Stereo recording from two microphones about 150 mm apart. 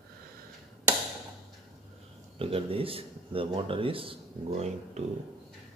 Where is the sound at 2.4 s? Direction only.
40° right (ahead or behind).